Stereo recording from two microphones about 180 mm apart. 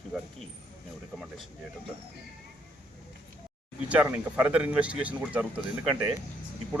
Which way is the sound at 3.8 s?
10° right (ahead or behind).